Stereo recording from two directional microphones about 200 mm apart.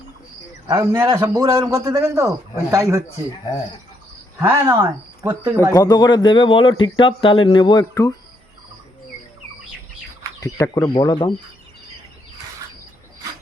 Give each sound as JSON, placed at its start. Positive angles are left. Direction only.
{"t": 0.7, "sound": "a man's voice", "side_deg": -15}
{"t": 4.4, "sound": "a man's voice", "side_deg": -15}
{"t": 5.7, "sound": "speech", "side_deg": 20}
{"t": 10.4, "sound": "speech", "side_deg": 15}